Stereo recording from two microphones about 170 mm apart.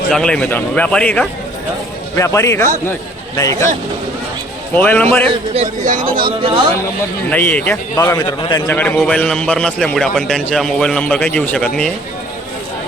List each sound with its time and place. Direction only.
0.1 s speech: 5° left (ahead or behind)
2.1 s speech: 15° left (ahead or behind)
4.7 s speech: 10° left (ahead or behind)
5.8 s speech: 50° right (ahead or behind)
6.4 s speech: 30° right (ahead or behind)
7.3 s speech: 10° left (ahead or behind); by 8.7 s 25° left (ahead or behind)
8.7 s a man's voice: 10° left (ahead or behind)